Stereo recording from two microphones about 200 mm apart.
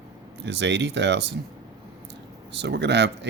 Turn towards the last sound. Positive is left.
turn(degrees=-60)  # may be behind; listen again after turning